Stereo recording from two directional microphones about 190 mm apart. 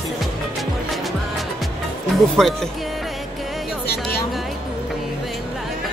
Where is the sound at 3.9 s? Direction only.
55° left (ahead or behind).